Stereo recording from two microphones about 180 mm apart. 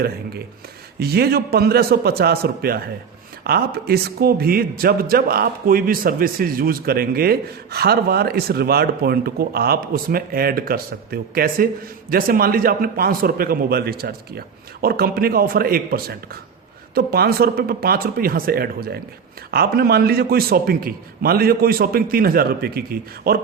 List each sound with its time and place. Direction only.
0.9 s a man's voice: 60° right (ahead or behind)